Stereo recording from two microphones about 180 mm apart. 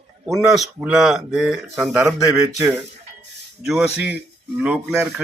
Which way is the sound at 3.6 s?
5° right (ahead or behind).